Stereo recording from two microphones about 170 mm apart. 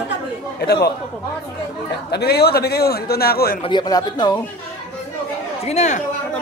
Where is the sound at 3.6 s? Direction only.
25° left (ahead or behind).